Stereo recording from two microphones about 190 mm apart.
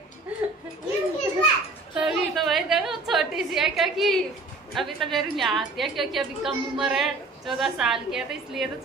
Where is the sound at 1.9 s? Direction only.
5° right (ahead or behind).